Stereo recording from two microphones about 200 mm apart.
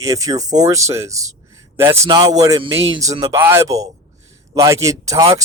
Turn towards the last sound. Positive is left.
turn(degrees=-15)  # may be behind; listen again after turning